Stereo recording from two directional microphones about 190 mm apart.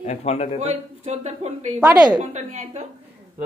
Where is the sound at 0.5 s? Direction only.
35° right (ahead or behind).